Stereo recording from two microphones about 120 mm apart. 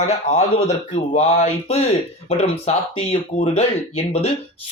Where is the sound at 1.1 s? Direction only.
60° left (ahead or behind).